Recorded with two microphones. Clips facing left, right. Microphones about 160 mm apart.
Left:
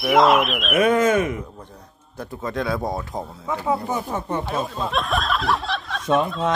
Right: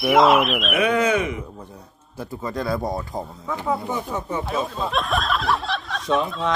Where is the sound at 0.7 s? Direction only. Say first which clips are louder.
Left 4 dB; 45° left (ahead or behind).